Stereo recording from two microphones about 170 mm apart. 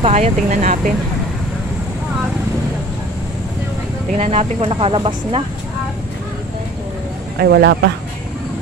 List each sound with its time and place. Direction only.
0.0 s speech: 40° right (ahead or behind)
4.2 s speech: 40° right (ahead or behind)
7.3 s speech: 80° right